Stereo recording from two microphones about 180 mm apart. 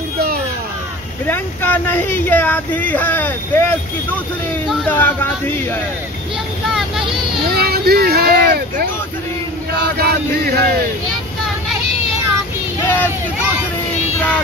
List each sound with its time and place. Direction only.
1.2 s speech: 10° left (ahead or behind)
4.6 s speech: 10° left (ahead or behind)
6.7 s vehicle: centre (ahead or behind)
7.4 s speech: 60° right (ahead or behind)
9.9 s music: 60° right (ahead or behind)
12.8 s a sound: 10° left (ahead or behind)